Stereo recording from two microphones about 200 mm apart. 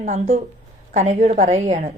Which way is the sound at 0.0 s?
35° right (ahead or behind).